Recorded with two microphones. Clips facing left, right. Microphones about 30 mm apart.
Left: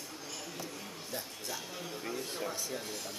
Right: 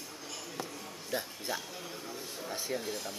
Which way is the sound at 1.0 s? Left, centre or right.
Right.